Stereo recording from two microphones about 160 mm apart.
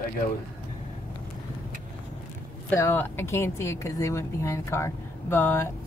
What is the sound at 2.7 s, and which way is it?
Speech, 15° left (ahead or behind).